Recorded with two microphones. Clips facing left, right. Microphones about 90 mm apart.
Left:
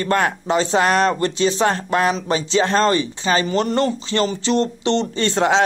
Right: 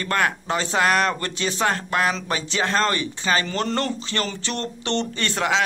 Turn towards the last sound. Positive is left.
turn(degrees=30)  # may be behind; listen again after turning